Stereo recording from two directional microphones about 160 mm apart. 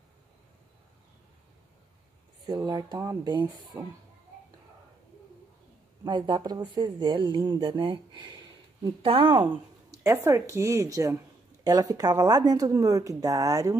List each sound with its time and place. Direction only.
2.4 s speech: 25° right (ahead or behind)
6.0 s speech: 30° right (ahead or behind)
9.8 s speech: 15° right (ahead or behind)